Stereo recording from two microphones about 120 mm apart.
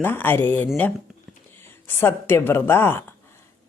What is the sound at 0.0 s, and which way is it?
Speech, 15° left (ahead or behind).